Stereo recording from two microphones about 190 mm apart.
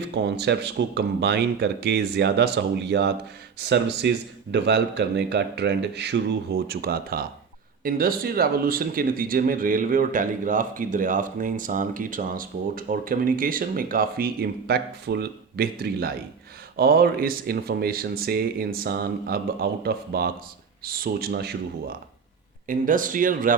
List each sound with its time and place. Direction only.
0.1 s speech: 65° right (ahead or behind)
14.7 s speech: 60° right (ahead or behind)